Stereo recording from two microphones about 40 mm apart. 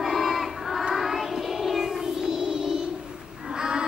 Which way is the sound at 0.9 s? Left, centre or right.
Centre.